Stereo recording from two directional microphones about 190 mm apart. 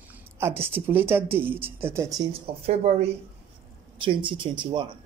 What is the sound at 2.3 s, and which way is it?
Speech, 30° right (ahead or behind).